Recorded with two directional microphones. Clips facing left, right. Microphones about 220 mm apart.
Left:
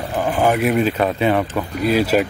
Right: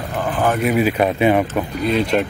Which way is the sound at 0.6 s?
5° right (ahead or behind).